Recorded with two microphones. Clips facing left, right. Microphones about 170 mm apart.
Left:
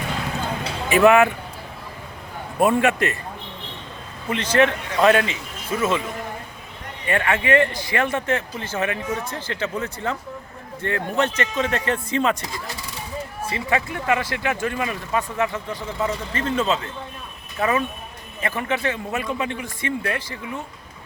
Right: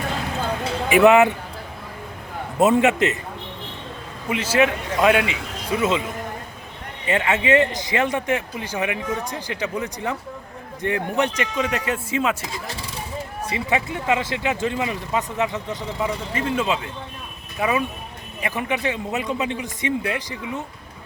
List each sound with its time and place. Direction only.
0.9 s speech: 15° right (ahead or behind)
2.6 s speech: 20° right (ahead or behind)
4.3 s speech: 5° right (ahead or behind)
7.1 s speech: 20° right (ahead or behind)
13.4 s speech: 20° right (ahead or behind)